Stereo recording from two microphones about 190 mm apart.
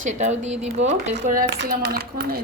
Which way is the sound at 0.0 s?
40° right (ahead or behind).